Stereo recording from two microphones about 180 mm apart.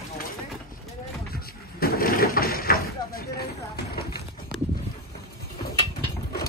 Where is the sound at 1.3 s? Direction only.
55° left (ahead or behind).